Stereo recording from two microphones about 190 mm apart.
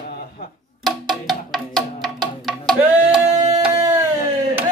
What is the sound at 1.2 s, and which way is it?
Music, centre (ahead or behind).